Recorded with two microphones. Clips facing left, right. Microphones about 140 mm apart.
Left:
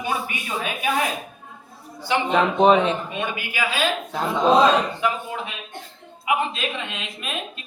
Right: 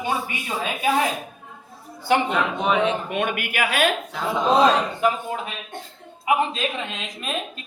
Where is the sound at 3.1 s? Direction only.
65° right (ahead or behind).